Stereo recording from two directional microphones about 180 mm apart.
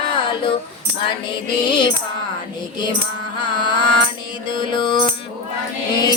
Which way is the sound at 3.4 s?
25° left (ahead or behind).